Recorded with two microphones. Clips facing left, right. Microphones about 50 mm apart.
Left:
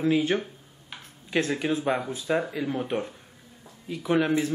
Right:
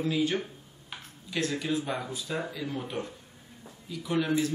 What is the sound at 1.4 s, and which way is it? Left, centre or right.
Speech, left.